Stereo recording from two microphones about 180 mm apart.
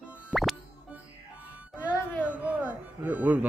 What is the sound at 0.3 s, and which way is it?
Music, centre (ahead or behind).